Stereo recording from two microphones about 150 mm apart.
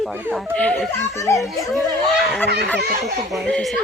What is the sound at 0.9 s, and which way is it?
Speech, 20° left (ahead or behind).